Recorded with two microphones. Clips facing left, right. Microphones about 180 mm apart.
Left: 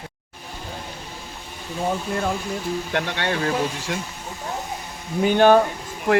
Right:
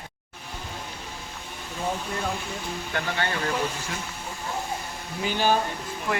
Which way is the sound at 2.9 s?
70° left (ahead or behind).